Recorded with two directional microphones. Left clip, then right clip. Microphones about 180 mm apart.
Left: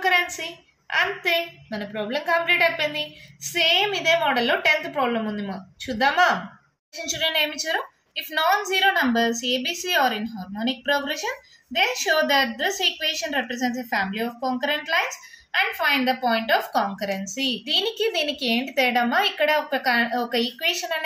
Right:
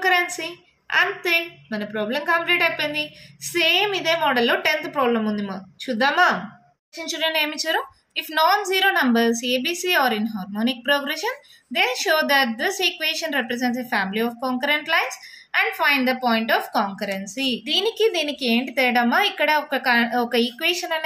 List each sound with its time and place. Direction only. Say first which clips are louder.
0.0 s a woman's voice: right 1 dB; 25° right (ahead or behind)